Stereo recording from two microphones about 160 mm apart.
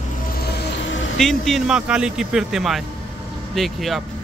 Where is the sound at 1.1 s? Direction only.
Centre (ahead or behind).